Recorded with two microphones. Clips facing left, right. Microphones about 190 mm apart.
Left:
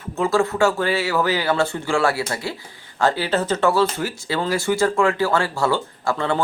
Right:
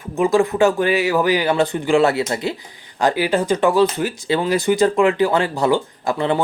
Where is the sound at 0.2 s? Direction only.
15° right (ahead or behind).